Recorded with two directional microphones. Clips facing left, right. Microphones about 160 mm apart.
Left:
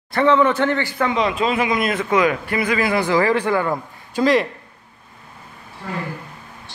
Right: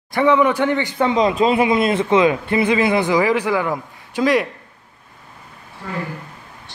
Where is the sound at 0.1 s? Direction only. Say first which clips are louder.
Right 1 dB; 15° right (ahead or behind).